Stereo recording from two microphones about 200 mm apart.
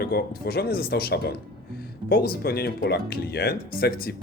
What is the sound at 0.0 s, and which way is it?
Speech, 50° left (ahead or behind).